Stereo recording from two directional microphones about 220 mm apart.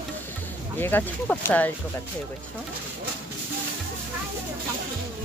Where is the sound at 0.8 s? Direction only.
10° left (ahead or behind).